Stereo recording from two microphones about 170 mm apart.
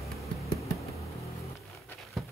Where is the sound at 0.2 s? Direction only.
Centre (ahead or behind).